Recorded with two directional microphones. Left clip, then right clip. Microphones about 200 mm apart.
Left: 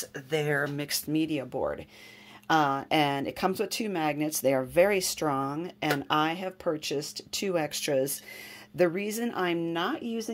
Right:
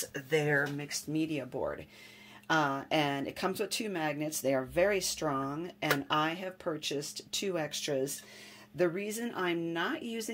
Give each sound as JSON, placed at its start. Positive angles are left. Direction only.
{"t": 0.0, "sound": "speech", "side_deg": 25}
{"t": 0.7, "sound": "speech", "side_deg": 50}